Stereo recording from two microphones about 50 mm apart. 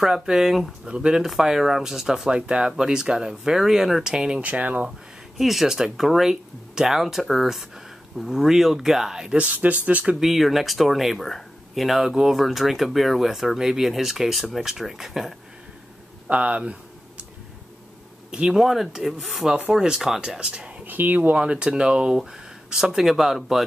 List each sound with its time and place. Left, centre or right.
0.0 s speech: centre
0.8 s speech: centre
1.2 s speech: centre
4.4 s speech: right
5.4 s speech: centre
9.4 s speech: right
10.2 s speech: centre
16.3 s speech: right
18.5 s speech: centre; by 20.8 s right
20.8 s speech: right
21.4 s speech: centre